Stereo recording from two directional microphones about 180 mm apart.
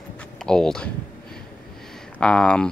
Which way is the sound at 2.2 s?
5° left (ahead or behind).